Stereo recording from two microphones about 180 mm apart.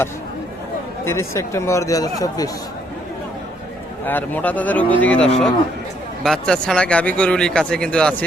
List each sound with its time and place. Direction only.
1.0 s speech: 15° left (ahead or behind)
4.0 s speech: 10° left (ahead or behind)